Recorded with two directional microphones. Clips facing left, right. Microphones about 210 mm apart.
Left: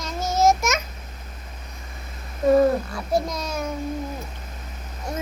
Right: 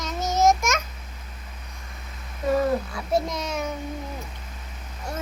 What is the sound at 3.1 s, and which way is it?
Speech, 25° right (ahead or behind).